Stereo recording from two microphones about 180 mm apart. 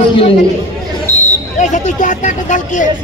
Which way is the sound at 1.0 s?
15° right (ahead or behind).